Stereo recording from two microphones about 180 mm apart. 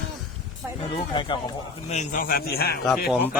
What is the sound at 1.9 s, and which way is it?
Speech, 45° left (ahead or behind).